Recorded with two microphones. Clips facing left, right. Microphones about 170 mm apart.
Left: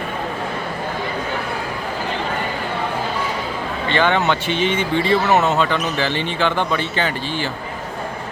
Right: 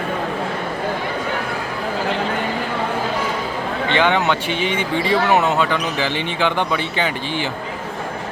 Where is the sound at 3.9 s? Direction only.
15° right (ahead or behind).